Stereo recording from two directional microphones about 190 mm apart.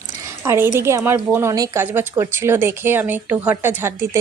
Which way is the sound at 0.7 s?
15° right (ahead or behind).